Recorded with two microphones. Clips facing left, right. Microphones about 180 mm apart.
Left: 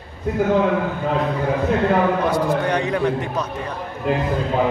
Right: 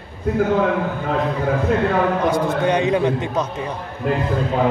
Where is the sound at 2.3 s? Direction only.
20° right (ahead or behind).